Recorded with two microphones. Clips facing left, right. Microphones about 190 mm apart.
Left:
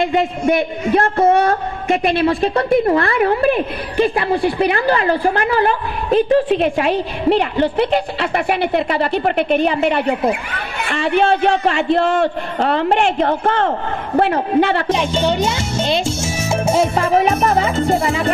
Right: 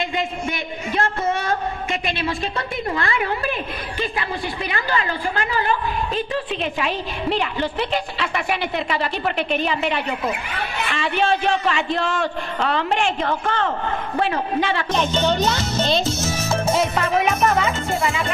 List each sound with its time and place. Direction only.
0.0 s a woman's voice: 55° left (ahead or behind)
14.6 s a woman's voice: 60° left (ahead or behind)
14.9 s speech: 10° left (ahead or behind)
16.3 s music: 25° left (ahead or behind)